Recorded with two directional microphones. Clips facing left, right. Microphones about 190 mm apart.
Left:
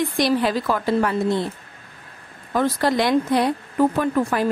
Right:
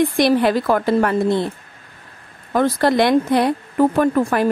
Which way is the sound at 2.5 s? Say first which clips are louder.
Right 4 dB; 60° right (ahead or behind).